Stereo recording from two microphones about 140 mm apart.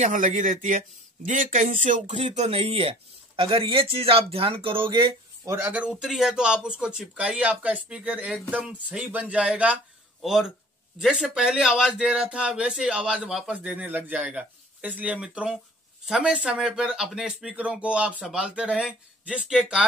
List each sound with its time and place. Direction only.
0.0 s speech: 60° right (ahead or behind); by 5.1 s 40° right (ahead or behind)
5.4 s speech: 20° right (ahead or behind)